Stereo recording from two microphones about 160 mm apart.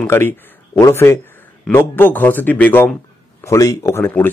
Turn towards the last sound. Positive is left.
turn(degrees=15)  # may be behind; listen again after turning